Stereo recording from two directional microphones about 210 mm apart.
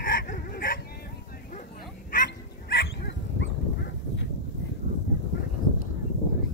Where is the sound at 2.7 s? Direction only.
55° left (ahead or behind).